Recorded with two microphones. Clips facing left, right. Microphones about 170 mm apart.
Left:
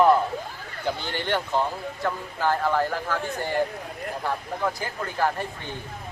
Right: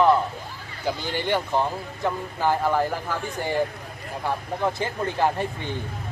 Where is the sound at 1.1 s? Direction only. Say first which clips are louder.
Right 2 dB; 10° right (ahead or behind).